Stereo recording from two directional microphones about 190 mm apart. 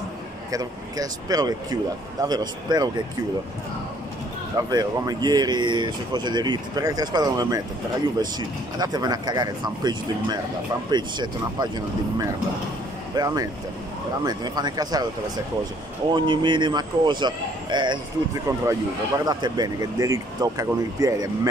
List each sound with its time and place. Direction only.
0.5 s speech: 20° right (ahead or behind)
4.6 s speech: 20° right (ahead or behind)
16.1 s speech: 25° right (ahead or behind)